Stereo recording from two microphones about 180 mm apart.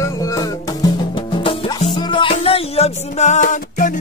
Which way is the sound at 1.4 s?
30° left (ahead or behind).